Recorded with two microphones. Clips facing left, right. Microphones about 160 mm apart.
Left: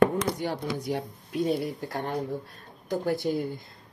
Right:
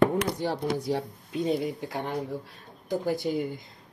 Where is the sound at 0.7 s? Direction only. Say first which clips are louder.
Right 2 dB; 30° right (ahead or behind).